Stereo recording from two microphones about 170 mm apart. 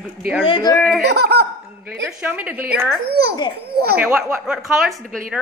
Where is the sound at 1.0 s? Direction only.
75° right (ahead or behind).